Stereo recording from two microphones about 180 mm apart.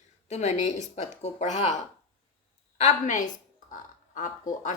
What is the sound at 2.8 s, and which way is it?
Music, 40° left (ahead or behind).